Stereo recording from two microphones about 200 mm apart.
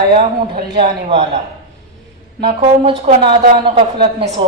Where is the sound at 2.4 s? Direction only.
25° right (ahead or behind).